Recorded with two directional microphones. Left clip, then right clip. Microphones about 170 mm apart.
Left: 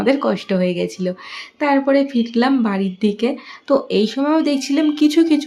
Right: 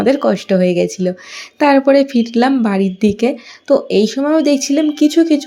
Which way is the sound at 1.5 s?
35° right (ahead or behind).